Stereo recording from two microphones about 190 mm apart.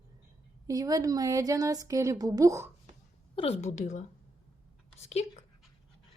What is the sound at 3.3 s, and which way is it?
A woman's voice, 30° left (ahead or behind).